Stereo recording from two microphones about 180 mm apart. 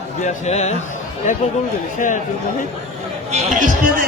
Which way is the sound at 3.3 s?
45° right (ahead or behind).